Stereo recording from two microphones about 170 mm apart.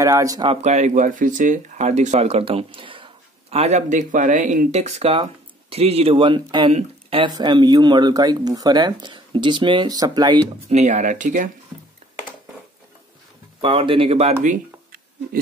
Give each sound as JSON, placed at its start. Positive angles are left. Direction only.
{"t": 0.0, "sound": "speech", "side_deg": -20}
{"t": 0.5, "sound": "speech", "side_deg": -40}
{"t": 10.7, "sound": "speech", "side_deg": -45}
{"t": 13.6, "sound": "speech", "side_deg": -30}